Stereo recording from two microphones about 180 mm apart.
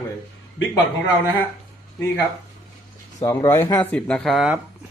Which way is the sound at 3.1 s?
20° left (ahead or behind).